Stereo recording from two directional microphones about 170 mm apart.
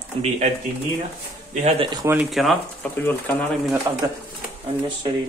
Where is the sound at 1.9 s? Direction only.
15° right (ahead or behind).